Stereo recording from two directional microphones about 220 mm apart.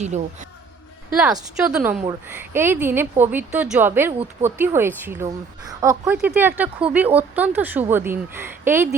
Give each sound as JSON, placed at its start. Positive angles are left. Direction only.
{"t": 0.0, "sound": "speech", "side_deg": -30}
{"t": 1.2, "sound": "a woman's voice", "side_deg": -5}